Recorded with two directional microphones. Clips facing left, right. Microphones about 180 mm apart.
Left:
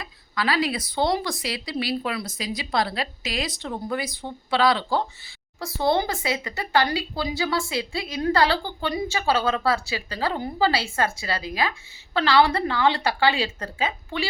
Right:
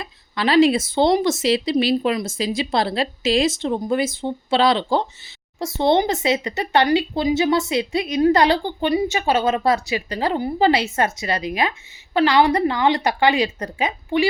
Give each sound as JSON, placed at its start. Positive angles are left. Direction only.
{"t": 0.0, "sound": "speech", "side_deg": -25}